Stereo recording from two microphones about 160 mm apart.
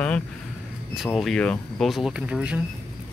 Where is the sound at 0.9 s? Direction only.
Centre (ahead or behind).